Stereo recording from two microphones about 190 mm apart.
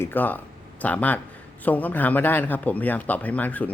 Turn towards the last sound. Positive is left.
turn(degrees=10)  # may be behind; listen again after turning